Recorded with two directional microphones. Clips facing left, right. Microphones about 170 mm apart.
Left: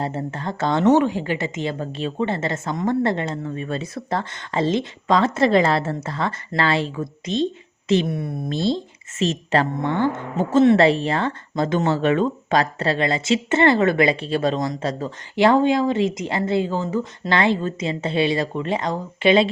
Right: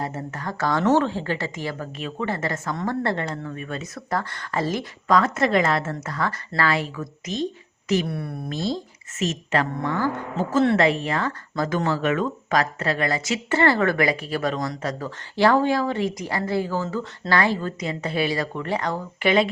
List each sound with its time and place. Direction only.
0.0 s a woman's voice: 30° left (ahead or behind)
10.8 s a woman's voice: 30° left (ahead or behind)